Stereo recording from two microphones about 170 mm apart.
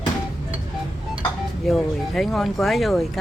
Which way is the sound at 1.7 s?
Centre (ahead or behind).